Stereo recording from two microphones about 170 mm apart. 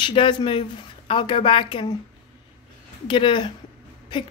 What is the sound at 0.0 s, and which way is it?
Speech, 30° left (ahead or behind).